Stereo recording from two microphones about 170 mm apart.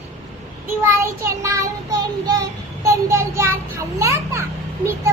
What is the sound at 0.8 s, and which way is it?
Child singing, 15° right (ahead or behind).